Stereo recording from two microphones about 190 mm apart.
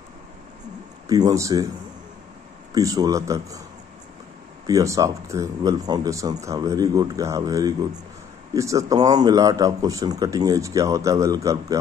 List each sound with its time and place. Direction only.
1.0 s speech: 20° right (ahead or behind)
2.7 s speech: 20° right (ahead or behind)
4.6 s speech: 15° right (ahead or behind)